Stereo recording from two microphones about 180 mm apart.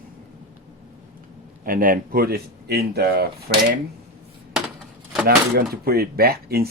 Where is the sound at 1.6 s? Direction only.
50° right (ahead or behind).